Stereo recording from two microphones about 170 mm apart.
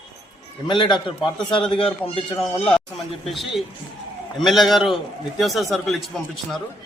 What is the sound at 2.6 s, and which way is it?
Speech, centre (ahead or behind).